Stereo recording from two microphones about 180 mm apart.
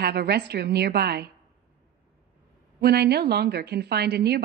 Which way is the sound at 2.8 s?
65° right (ahead or behind).